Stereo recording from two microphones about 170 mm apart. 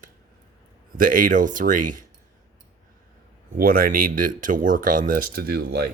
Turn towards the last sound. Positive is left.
turn(degrees=-70)  # may be behind; listen again after turning